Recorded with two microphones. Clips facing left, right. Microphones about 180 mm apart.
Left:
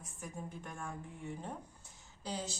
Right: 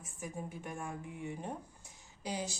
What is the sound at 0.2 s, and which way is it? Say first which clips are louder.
Speech: right 3 dB; 10° right (ahead or behind).